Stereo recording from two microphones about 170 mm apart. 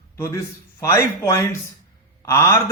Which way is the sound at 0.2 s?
20° left (ahead or behind).